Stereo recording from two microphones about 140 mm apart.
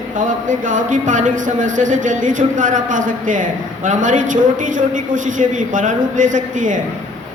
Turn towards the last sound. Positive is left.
turn(degrees=-65)  # may be behind; listen again after turning